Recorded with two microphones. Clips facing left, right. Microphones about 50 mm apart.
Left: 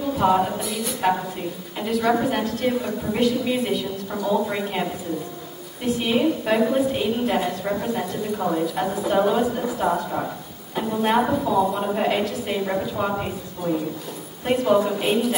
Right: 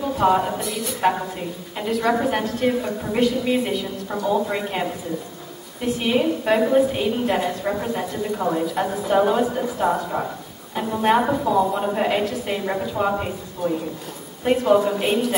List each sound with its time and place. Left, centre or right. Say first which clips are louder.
0.1 s a woman's voice: even; centre